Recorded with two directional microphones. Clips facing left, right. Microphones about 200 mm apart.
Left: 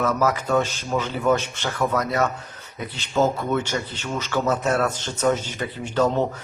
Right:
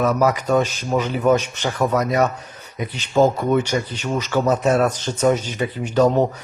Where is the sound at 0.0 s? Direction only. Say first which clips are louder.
Right 4 dB; 15° right (ahead or behind).